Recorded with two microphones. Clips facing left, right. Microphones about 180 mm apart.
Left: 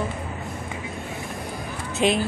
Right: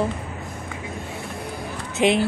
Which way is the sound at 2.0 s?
15° right (ahead or behind).